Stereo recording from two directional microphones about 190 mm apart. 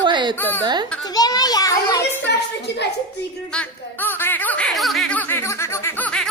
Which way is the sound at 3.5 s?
10° left (ahead or behind).